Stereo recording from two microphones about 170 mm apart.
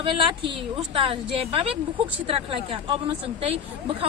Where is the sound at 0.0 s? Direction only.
30° right (ahead or behind).